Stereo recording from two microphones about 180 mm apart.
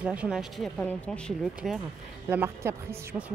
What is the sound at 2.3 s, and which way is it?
Speech, 15° right (ahead or behind).